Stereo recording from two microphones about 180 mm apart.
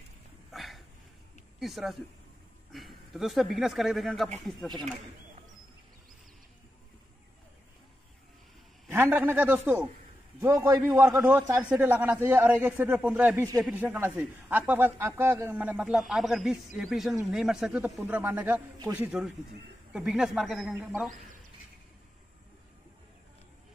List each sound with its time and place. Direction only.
0.5 s a sound: centre (ahead or behind)
1.6 s speech: centre (ahead or behind)
8.8 s a man's voice: 10° right (ahead or behind)
19.0 s a man's voice: centre (ahead or behind)